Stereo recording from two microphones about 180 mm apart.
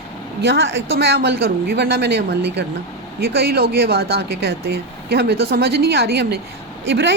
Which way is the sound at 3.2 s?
60° right (ahead or behind).